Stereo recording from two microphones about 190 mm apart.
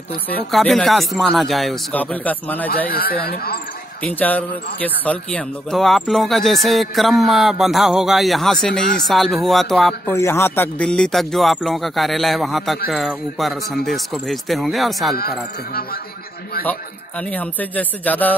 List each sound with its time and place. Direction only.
0.5 s speech: centre (ahead or behind)
2.9 s speech: 50° left (ahead or behind)
4.0 s speech: 10° left (ahead or behind)
10.1 s speech: 15° left (ahead or behind)
17.2 s speech: 10° left (ahead or behind)